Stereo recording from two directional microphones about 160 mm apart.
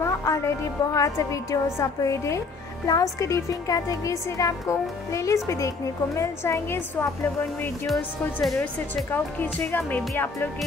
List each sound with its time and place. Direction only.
0.0 s music: 20° left (ahead or behind)
0.9 s a woman's voice: 20° left (ahead or behind)
7.8 s speech: centre (ahead or behind)